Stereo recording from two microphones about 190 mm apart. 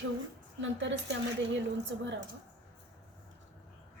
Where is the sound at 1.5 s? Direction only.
75° right (ahead or behind).